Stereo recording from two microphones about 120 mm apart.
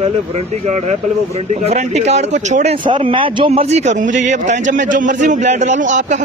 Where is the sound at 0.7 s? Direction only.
70° right (ahead or behind).